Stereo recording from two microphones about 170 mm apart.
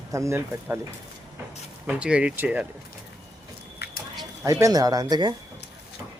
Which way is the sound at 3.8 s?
75° left (ahead or behind).